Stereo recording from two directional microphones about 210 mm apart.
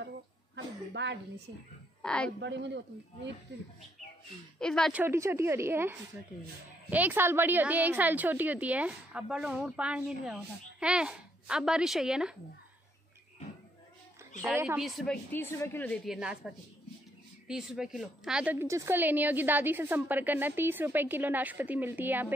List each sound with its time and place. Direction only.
1.0 s a man's voice: 55° right (ahead or behind)
2.0 s a woman's voice: 5° left (ahead or behind)
2.4 s a man's voice: 55° right (ahead or behind)
4.6 s a woman's voice: 5° left (ahead or behind)
5.0 s a woman's voice: 10° right (ahead or behind)
14.3 s a woman's voice: 35° left (ahead or behind)
14.8 s a woman's voice: centre (ahead or behind)
15.3 s a woman's voice: 10° left (ahead or behind); by 22.3 s 10° right (ahead or behind)